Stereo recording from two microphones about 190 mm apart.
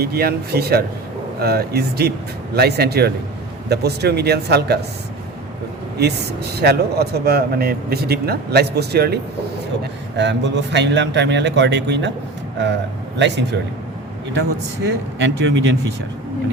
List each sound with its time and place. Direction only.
0.0 s speech: 55° right (ahead or behind)
6.0 s speech: 60° right (ahead or behind)
10.2 s a man's voice: 65° right (ahead or behind)
13.1 s a man's voice: 65° right (ahead or behind)
15.2 s a man's voice: 70° right (ahead or behind)